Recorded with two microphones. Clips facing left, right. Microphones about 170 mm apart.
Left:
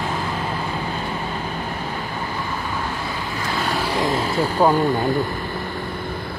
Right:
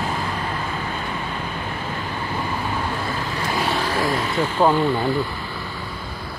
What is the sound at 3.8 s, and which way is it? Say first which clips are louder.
Vehicle: left 1 dB; 15° left (ahead or behind).